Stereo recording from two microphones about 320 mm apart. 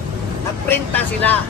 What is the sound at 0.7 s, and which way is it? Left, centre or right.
Speech, centre.